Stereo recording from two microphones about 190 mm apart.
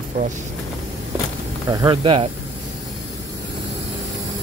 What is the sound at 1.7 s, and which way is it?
Speech, 25° right (ahead or behind).